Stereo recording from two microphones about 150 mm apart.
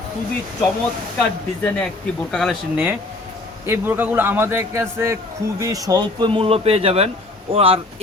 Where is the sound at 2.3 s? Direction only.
5° left (ahead or behind).